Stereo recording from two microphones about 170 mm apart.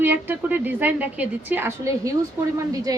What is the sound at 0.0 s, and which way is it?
A woman's voice, 10° right (ahead or behind).